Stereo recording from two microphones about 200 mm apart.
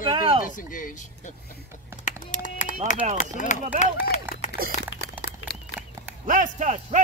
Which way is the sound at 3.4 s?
40° left (ahead or behind).